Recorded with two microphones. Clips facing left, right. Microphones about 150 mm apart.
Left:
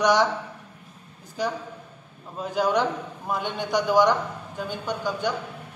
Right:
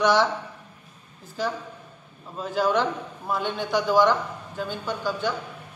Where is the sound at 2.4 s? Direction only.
15° left (ahead or behind).